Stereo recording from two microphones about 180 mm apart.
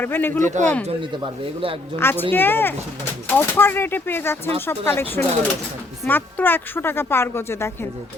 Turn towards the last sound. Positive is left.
turn(degrees=15)  # may be behind; listen again after turning